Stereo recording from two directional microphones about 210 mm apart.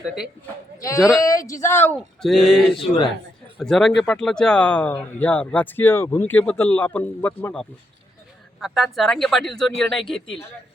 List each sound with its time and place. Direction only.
0.8 s speech: 15° left (ahead or behind)